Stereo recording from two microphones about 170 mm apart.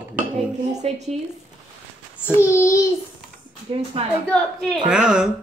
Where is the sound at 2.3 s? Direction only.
15° left (ahead or behind).